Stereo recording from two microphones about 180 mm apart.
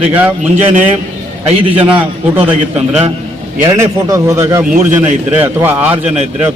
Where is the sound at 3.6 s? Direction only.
20° right (ahead or behind).